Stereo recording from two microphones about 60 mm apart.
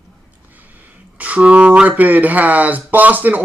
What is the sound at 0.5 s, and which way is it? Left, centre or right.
Speech, right.